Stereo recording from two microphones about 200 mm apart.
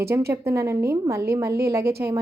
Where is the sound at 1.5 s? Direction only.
50° right (ahead or behind).